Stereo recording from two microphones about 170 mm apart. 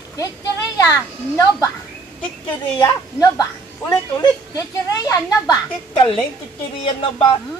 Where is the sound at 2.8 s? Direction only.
20° left (ahead or behind).